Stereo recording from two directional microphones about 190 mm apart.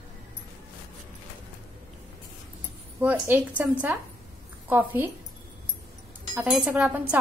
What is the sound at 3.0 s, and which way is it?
A woman's voice, 10° right (ahead or behind).